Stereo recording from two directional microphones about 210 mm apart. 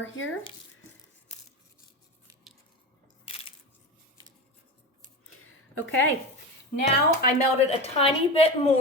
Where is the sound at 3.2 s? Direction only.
25° left (ahead or behind).